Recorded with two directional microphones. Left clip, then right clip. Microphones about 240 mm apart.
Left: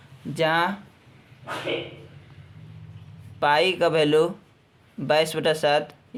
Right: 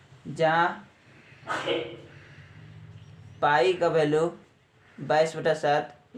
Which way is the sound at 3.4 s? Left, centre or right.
Left.